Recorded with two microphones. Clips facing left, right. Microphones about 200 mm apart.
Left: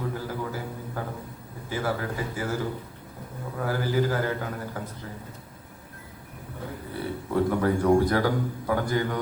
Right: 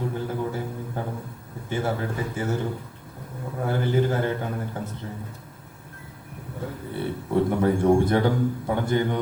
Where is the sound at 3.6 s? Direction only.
25° right (ahead or behind).